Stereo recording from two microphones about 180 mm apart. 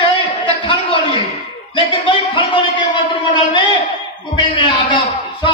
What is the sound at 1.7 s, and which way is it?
A man's voice, 30° left (ahead or behind).